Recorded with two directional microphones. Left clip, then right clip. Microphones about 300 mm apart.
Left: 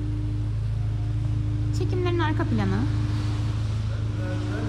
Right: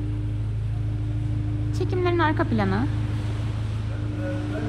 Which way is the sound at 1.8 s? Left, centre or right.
Centre.